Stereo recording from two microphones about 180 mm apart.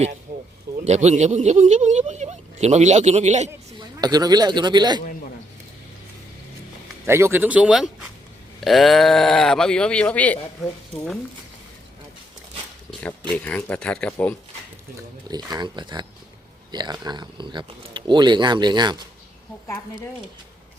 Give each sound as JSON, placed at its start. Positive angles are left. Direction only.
{"t": 0.3, "sound": "a sound", "side_deg": -45}
{"t": 0.9, "sound": "speech", "side_deg": -40}
{"t": 3.8, "sound": "speech", "side_deg": -20}
{"t": 7.1, "sound": "speech", "side_deg": -15}
{"t": 12.9, "sound": "a sound", "side_deg": 5}
{"t": 13.3, "sound": "speech", "side_deg": 10}
{"t": 15.3, "sound": "speech", "side_deg": -25}
{"t": 19.6, "sound": "speech", "side_deg": 15}